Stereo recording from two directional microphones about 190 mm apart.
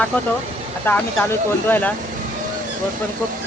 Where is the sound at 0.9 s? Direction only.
10° left (ahead or behind).